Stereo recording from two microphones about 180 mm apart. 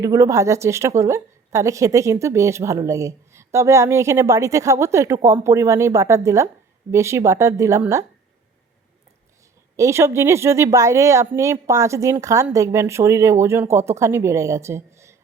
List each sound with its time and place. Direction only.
0.0 s a woman's voice: 15° right (ahead or behind)
9.7 s a woman's voice: 15° right (ahead or behind)